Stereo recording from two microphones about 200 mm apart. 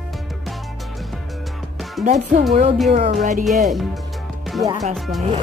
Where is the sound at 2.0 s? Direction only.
35° right (ahead or behind).